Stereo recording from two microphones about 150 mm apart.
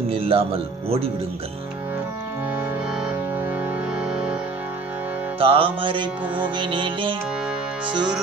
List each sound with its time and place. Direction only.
0.1 s music: 40° right (ahead or behind)
4.0 s music: 5° right (ahead or behind)
5.4 s music: 35° right (ahead or behind)